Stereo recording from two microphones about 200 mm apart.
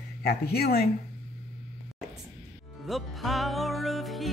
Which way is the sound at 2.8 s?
Centre (ahead or behind).